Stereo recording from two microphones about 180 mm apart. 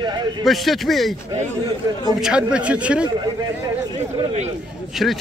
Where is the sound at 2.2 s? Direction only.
5° right (ahead or behind).